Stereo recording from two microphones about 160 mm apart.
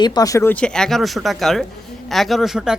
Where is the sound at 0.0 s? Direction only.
25° left (ahead or behind).